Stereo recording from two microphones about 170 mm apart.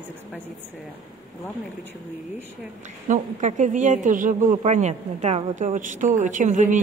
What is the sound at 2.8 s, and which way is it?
A man's voice, 45° right (ahead or behind).